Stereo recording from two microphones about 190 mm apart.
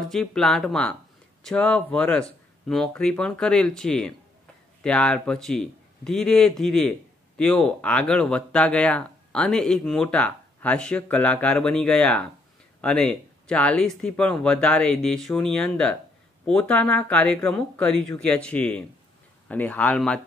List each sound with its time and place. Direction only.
0.1 s speech: 5° left (ahead or behind)